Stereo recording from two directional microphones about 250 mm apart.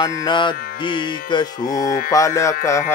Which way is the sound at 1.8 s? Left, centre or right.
Left.